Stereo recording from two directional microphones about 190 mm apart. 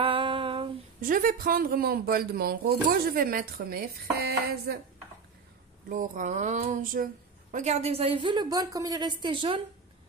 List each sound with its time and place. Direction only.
0.0 s a sound: 25° right (ahead or behind)
1.0 s speech: 50° right (ahead or behind)
5.9 s speech: 40° right (ahead or behind)
7.5 s a woman's voice: 35° right (ahead or behind)